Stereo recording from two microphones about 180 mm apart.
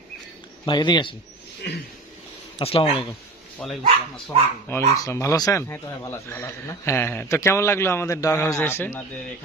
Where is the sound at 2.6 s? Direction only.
30° left (ahead or behind).